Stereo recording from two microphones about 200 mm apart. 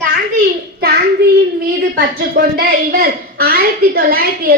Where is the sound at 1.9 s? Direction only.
45° right (ahead or behind).